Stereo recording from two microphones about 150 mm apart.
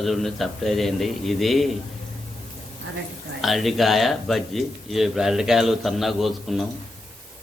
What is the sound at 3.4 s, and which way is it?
Speech, centre (ahead or behind).